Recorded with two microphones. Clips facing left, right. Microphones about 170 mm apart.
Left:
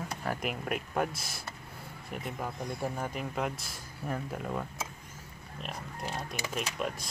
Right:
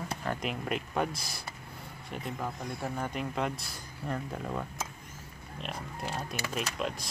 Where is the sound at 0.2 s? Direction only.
5° left (ahead or behind).